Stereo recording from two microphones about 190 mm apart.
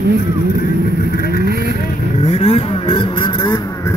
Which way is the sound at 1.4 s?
55° right (ahead or behind).